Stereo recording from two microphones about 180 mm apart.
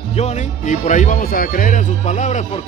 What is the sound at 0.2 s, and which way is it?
Speech, 45° left (ahead or behind).